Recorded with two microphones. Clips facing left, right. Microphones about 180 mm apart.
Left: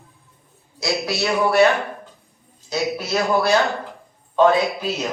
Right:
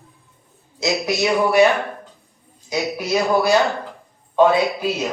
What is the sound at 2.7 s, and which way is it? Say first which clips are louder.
Speech: right 1 dB; 10° right (ahead or behind).